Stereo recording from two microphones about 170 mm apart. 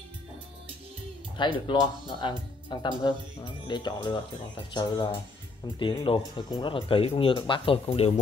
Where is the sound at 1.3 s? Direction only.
30° left (ahead or behind).